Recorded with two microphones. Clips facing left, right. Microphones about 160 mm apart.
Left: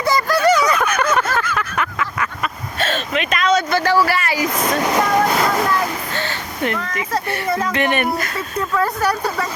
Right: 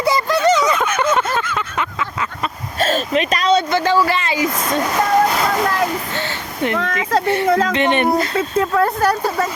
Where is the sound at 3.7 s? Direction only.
20° right (ahead or behind).